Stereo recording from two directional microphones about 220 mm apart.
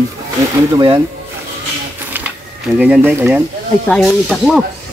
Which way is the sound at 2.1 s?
5° right (ahead or behind).